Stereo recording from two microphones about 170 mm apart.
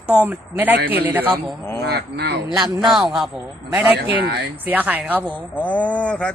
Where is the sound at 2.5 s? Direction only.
25° right (ahead or behind).